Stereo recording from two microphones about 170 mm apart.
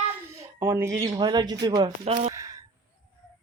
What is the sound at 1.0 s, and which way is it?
Speech, 25° right (ahead or behind).